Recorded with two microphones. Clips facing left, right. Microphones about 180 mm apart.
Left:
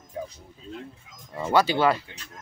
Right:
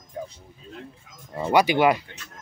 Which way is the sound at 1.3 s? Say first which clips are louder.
Right 2 dB; 15° right (ahead or behind).